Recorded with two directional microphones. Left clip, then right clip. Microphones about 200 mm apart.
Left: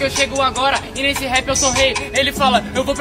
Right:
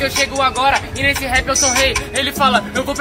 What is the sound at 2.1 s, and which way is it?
Speech, 10° left (ahead or behind).